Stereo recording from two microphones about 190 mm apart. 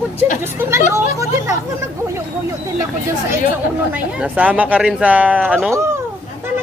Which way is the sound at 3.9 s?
10° right (ahead or behind).